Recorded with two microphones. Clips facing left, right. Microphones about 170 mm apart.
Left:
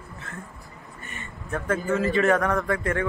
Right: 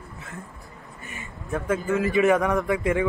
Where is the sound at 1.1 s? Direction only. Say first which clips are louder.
Right 2 dB; centre (ahead or behind).